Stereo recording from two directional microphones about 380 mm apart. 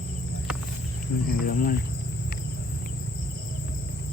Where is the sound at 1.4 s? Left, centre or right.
Left.